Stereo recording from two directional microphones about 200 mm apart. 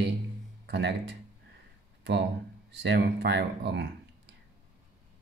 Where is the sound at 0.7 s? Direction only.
60° right (ahead or behind).